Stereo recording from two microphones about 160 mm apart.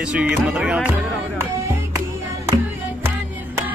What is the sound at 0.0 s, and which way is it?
Speech, 5° right (ahead or behind).